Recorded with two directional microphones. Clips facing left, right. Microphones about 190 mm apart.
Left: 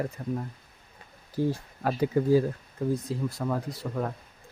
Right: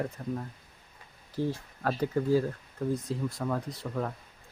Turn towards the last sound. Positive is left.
turn(degrees=5)  # may be behind; listen again after turning